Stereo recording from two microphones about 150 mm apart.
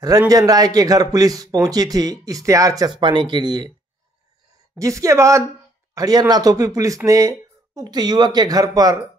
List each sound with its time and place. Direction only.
0.3 s a man's voice: 25° right (ahead or behind)
4.7 s a man's voice: 20° right (ahead or behind)